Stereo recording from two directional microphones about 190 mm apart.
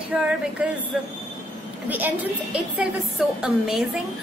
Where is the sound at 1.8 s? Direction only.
10° right (ahead or behind).